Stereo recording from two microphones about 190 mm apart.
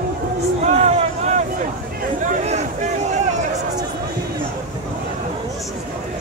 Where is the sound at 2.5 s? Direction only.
35° right (ahead or behind).